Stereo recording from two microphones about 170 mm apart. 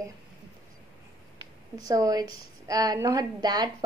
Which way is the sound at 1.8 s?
20° right (ahead or behind).